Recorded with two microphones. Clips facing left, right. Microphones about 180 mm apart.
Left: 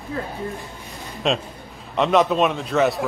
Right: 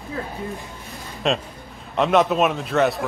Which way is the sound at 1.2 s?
Centre (ahead or behind).